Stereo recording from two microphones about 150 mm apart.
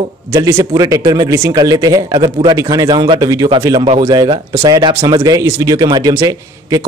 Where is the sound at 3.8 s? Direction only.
40° right (ahead or behind).